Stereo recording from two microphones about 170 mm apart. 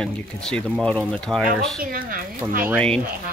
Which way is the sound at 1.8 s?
55° right (ahead or behind).